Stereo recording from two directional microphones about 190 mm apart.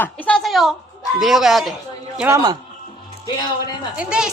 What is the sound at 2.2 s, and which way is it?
Speech, 15° right (ahead or behind).